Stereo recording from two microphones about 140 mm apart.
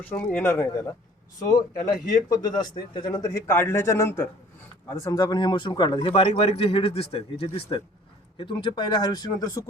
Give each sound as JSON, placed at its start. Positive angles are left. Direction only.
{"t": 0.0, "sound": "a man's voice", "side_deg": 10}